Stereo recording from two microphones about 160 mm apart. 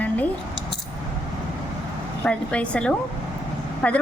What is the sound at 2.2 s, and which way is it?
A woman's voice, 5° left (ahead or behind).